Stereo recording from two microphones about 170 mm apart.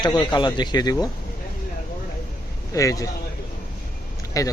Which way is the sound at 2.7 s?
20° left (ahead or behind).